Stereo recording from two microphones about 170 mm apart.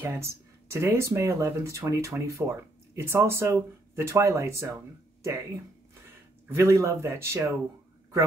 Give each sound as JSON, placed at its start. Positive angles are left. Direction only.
{"t": 0.0, "sound": "speech", "side_deg": -15}
{"t": 6.5, "sound": "speech", "side_deg": -15}